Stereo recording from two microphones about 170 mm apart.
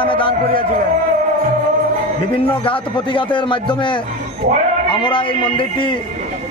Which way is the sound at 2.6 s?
30° left (ahead or behind).